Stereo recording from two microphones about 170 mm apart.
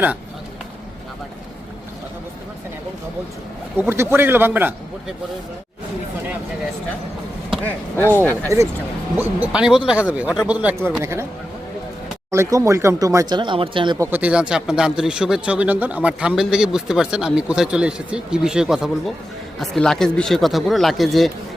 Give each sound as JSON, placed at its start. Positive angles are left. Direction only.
{"t": 3.8, "sound": "speech", "side_deg": -15}
{"t": 7.6, "sound": "speech", "side_deg": 10}
{"t": 9.4, "sound": "speech", "side_deg": -5}
{"t": 12.3, "sound": "speech", "side_deg": -15}
{"t": 14.1, "sound": "speech", "side_deg": -10}